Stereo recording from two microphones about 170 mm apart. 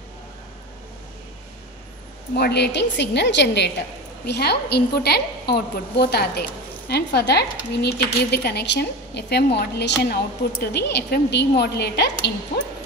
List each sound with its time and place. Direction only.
2.3 s a woman's voice: 75° left (ahead or behind)
4.3 s a woman's voice: 75° left (ahead or behind)